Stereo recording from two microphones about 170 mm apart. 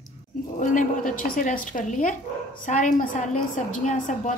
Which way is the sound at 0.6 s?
50° left (ahead or behind).